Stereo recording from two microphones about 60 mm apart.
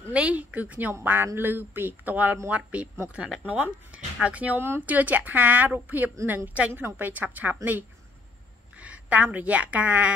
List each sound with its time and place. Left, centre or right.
0.1 s speech: right
1.2 s speech: right
4.6 s speech: right
7.1 s a woman's voice: right